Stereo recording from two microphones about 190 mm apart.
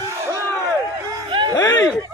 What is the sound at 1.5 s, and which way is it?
Speech, 20° left (ahead or behind).